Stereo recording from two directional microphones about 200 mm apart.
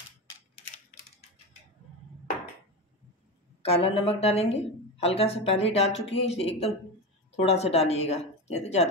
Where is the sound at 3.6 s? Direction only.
30° left (ahead or behind).